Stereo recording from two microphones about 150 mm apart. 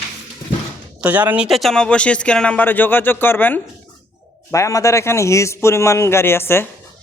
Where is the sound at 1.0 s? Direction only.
10° right (ahead or behind).